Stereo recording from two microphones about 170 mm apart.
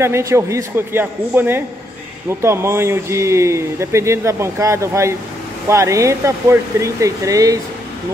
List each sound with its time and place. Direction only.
0.0 s speech: 15° right (ahead or behind)